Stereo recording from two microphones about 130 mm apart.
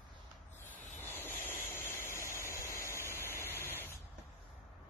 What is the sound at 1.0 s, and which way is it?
Vehicle, 15° left (ahead or behind).